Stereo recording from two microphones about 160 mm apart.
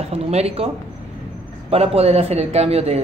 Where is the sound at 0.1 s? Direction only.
40° right (ahead or behind).